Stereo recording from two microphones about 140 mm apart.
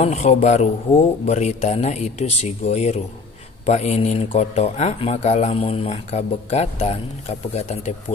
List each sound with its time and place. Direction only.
0.0 s speech: 50° left (ahead or behind)